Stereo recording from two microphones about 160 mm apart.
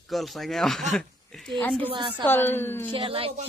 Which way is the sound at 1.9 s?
30° right (ahead or behind).